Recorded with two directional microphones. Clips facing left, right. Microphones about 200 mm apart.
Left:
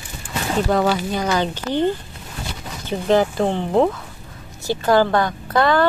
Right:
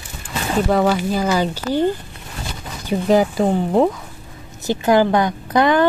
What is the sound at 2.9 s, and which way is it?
Speech, 10° right (ahead or behind).